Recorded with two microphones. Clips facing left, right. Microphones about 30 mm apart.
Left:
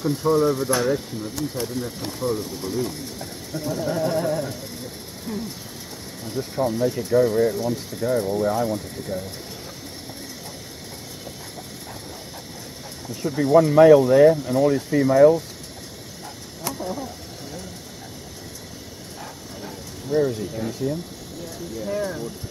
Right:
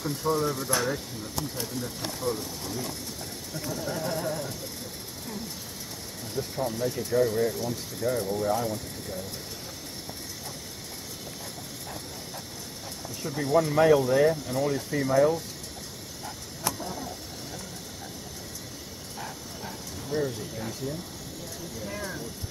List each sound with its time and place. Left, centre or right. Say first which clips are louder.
0.0 s speech: left 8 dB; centre
13.2 s speech: left 8 dB; centre
16.8 s a sound: left 6 dB; centre
20.1 s speech: left 8 dB; centre